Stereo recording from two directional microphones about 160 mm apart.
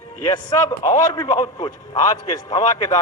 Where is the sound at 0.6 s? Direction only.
20° left (ahead or behind).